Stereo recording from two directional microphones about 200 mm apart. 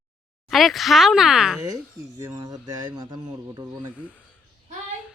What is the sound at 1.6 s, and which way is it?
Speech, 15° right (ahead or behind).